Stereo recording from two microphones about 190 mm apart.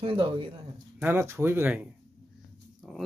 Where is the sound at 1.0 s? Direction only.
10° right (ahead or behind).